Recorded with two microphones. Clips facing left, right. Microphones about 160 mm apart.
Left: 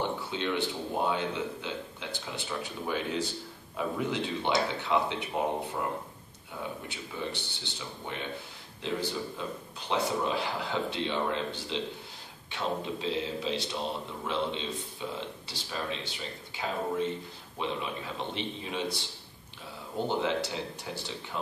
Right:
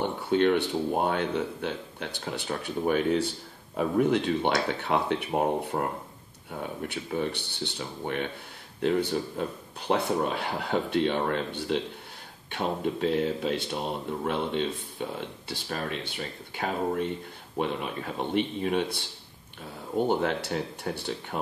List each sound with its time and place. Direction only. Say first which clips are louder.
0.0 s speech: right 8 dB; 55° right (ahead or behind)
9.4 s speech: right 5 dB; 55° right (ahead or behind)
20.1 s speech: left 1 dB; 55° right (ahead or behind)